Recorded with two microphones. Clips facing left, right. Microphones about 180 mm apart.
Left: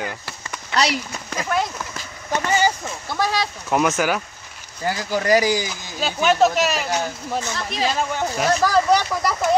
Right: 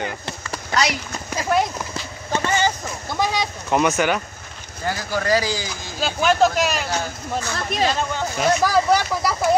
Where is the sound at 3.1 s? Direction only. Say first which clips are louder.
Even; 15° right (ahead or behind).